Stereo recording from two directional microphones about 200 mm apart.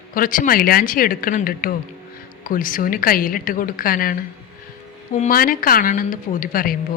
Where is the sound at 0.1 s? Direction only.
45° left (ahead or behind).